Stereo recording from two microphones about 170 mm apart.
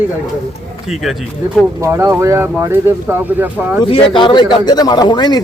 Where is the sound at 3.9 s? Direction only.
30° left (ahead or behind).